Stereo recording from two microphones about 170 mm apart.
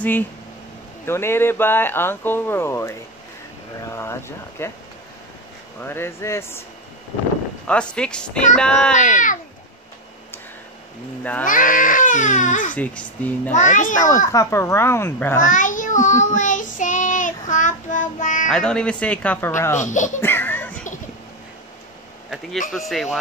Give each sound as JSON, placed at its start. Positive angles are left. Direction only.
{"t": 1.0, "sound": "speech", "side_deg": 15}
{"t": 5.8, "sound": "speech", "side_deg": 15}
{"t": 7.6, "sound": "speech", "side_deg": 5}
{"t": 9.0, "sound": "speech", "side_deg": 50}
{"t": 11.4, "sound": "speech", "side_deg": 50}
{"t": 12.7, "sound": "speech", "side_deg": 10}
{"t": 13.5, "sound": "speech", "side_deg": 45}
{"t": 13.9, "sound": "speech", "side_deg": 20}
{"t": 15.4, "sound": "child singing", "side_deg": 50}
{"t": 18.5, "sound": "speech", "side_deg": 5}
{"t": 19.8, "sound": "speech", "side_deg": 45}
{"t": 20.2, "sound": "music", "side_deg": 15}
{"t": 22.7, "sound": "speech", "side_deg": 0}